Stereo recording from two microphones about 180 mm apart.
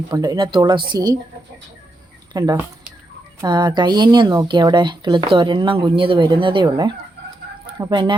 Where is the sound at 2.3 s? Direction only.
20° right (ahead or behind).